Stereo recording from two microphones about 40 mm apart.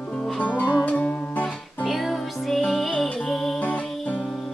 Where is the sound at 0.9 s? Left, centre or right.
Left.